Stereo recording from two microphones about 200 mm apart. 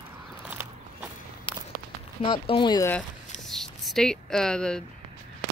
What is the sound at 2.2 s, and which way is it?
Speech, 25° left (ahead or behind).